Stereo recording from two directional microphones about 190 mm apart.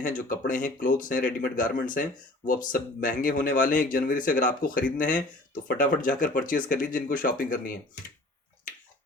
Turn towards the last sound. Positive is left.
turn(degrees=45)  # may be behind; listen again after turning